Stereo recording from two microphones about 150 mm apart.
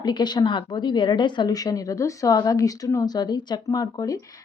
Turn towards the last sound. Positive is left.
turn(degrees=25)  # may be behind; listen again after turning